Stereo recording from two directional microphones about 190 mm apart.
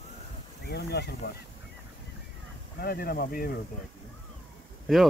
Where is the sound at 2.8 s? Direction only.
55° left (ahead or behind).